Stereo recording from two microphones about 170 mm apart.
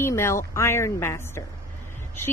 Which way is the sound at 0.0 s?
15° left (ahead or behind).